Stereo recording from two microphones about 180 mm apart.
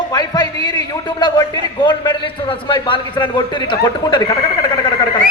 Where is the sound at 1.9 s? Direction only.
25° left (ahead or behind).